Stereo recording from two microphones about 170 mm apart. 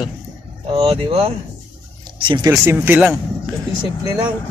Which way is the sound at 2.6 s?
10° right (ahead or behind).